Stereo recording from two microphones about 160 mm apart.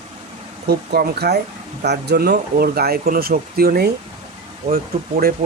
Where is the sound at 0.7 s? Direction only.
85° right.